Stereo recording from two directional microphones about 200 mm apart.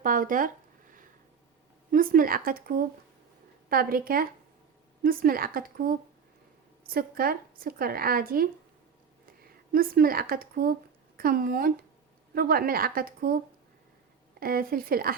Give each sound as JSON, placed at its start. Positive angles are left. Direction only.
{"t": 0.0, "sound": "speech", "side_deg": -45}
{"t": 1.9, "sound": "speech", "side_deg": -45}
{"t": 9.7, "sound": "speech", "side_deg": -45}
{"t": 14.3, "sound": "speech", "side_deg": -45}